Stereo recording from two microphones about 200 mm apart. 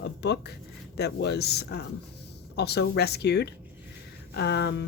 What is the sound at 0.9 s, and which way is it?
Speech, 55° left (ahead or behind).